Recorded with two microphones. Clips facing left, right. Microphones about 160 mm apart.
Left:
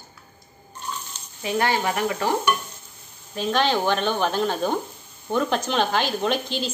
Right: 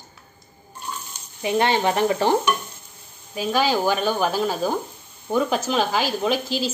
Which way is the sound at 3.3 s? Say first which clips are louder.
Right 1 dB; 5° right (ahead or behind).